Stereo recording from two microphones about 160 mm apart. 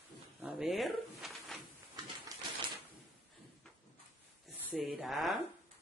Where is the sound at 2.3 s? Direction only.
20° right (ahead or behind).